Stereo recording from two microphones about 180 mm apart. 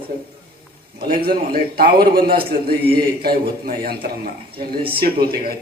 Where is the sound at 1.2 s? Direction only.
55° right (ahead or behind).